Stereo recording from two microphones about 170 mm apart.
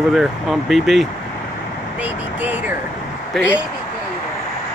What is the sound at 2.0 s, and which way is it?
Vehicle, 10° right (ahead or behind).